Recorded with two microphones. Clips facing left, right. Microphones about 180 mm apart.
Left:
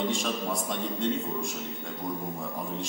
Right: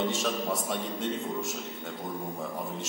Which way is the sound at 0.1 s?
Centre (ahead or behind).